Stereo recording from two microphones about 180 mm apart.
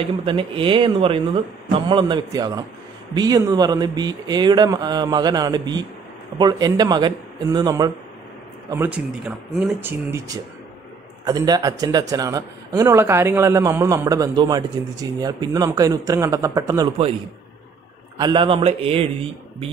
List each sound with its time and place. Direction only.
0.2 s a man's voice: 30° right (ahead or behind)
18.1 s a man's voice: 25° right (ahead or behind)